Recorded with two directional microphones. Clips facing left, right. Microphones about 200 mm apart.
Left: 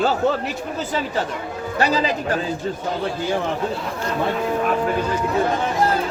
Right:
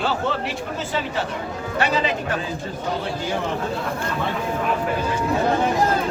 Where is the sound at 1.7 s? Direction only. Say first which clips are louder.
Left 2 dB; 35° left (ahead or behind).